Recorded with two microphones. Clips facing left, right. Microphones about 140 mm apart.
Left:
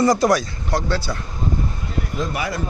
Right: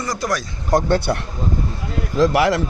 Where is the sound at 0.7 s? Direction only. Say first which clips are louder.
Right 6 dB; 50° right (ahead or behind).